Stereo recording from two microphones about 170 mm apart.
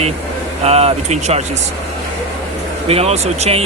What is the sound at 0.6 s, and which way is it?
Speech, 35° right (ahead or behind).